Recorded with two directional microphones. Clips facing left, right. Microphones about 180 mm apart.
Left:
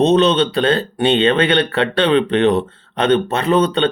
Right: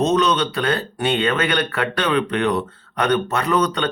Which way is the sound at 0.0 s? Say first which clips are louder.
Left 5 dB; 25° left (ahead or behind).